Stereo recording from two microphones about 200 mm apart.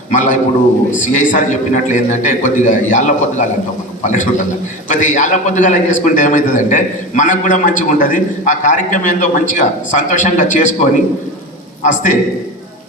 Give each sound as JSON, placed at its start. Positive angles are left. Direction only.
{"t": 0.1, "sound": "a man's voice", "side_deg": 40}